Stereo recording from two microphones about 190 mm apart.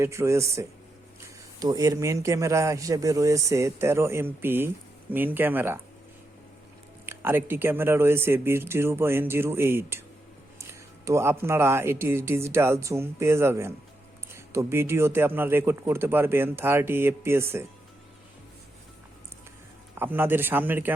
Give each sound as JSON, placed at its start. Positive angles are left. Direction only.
{"t": 0.0, "sound": "speech", "side_deg": -15}
{"t": 7.0, "sound": "speech", "side_deg": -10}
{"t": 20.0, "sound": "speech", "side_deg": -10}